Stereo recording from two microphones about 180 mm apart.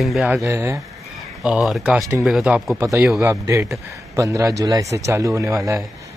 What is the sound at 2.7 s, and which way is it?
Speech, 15° right (ahead or behind).